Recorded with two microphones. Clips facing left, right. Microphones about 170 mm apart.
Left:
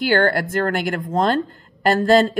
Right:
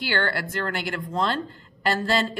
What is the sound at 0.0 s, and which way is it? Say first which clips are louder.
A woman's voice: left 9 dB; 50° left (ahead or behind).